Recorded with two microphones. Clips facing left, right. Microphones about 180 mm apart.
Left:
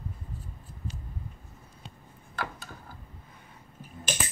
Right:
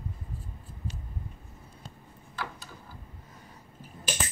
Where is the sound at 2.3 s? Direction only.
50° left (ahead or behind).